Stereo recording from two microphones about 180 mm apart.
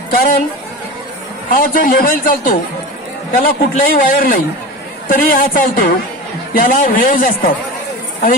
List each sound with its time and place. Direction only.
0.1 s a man's voice: 55° left (ahead or behind)
1.5 s a man's voice: 50° left (ahead or behind)